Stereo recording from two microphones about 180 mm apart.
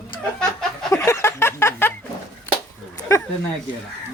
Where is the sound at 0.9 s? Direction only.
15° left (ahead or behind).